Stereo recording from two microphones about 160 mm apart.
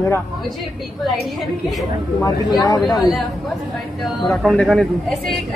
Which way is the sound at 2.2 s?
20° left (ahead or behind).